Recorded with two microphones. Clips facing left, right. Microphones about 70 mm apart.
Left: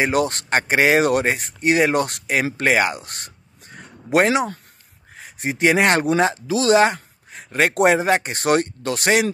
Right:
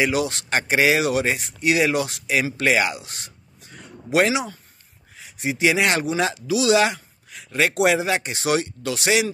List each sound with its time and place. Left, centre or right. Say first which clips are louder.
0.0 s speech: left 2 dB; left